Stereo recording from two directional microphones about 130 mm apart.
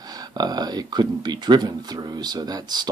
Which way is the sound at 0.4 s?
30° right (ahead or behind).